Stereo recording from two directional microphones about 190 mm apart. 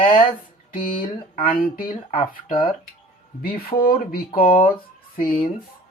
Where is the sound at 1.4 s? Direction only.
50° left (ahead or behind).